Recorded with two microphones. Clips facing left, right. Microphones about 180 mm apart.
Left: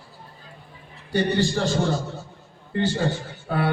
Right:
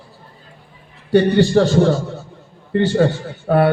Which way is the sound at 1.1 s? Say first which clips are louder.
Right 9 dB; 65° right (ahead or behind).